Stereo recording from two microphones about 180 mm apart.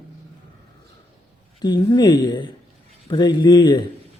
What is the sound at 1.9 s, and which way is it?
Speech, 20° left (ahead or behind).